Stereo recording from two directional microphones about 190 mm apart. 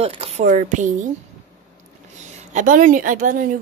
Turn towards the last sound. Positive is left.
turn(degrees=-45)  # may be behind; listen again after turning